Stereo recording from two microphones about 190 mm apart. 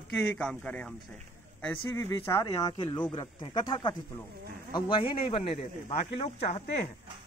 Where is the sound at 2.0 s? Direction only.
15° left (ahead or behind); by 6.9 s 35° left (ahead or behind).